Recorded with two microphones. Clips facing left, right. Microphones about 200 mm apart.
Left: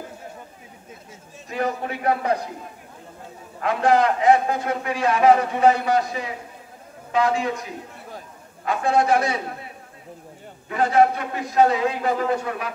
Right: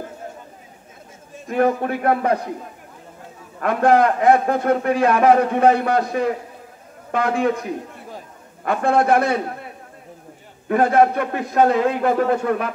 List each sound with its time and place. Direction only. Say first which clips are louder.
1.5 s a man's voice: right 7 dB; 55° right (ahead or behind)
3.6 s a man's voice: right 3 dB; 55° right (ahead or behind)
8.6 s a man's voice: right 3 dB; 55° right (ahead or behind)
10.7 s a man's voice: right 3 dB; 55° right (ahead or behind)